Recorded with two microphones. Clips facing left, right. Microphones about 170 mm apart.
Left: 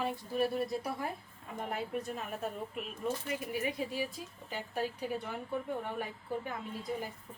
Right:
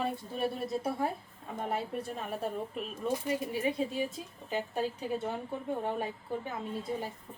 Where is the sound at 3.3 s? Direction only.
25° right (ahead or behind).